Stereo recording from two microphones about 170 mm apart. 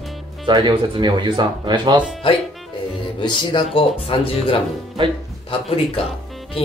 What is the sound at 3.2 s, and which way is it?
Speech, 25° left (ahead or behind).